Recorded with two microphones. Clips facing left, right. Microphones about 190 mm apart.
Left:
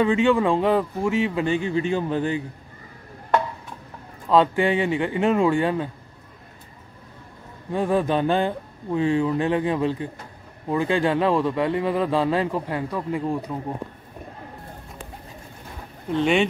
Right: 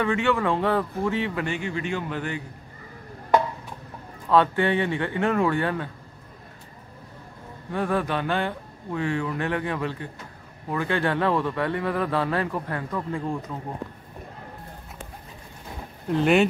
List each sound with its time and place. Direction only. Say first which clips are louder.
0.0 s a man's voice: left 5 dB; 15° left (ahead or behind)
1.6 s a man's voice: left 6 dB; 30° left (ahead or behind)
4.3 s a man's voice: left 2 dB; 15° left (ahead or behind)
7.7 s a man's voice: left 4 dB; 15° left (ahead or behind)
16.1 s speech: right 1 dB; 5° right (ahead or behind)